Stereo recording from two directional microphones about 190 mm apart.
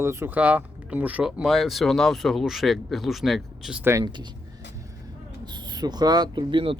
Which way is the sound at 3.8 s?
20° right (ahead or behind).